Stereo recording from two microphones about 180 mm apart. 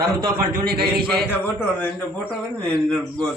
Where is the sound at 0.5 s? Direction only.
55° right (ahead or behind).